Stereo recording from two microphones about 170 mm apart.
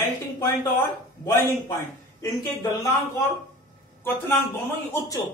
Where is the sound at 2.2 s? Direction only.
20° left (ahead or behind).